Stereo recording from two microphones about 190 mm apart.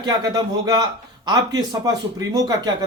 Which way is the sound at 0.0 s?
20° right (ahead or behind).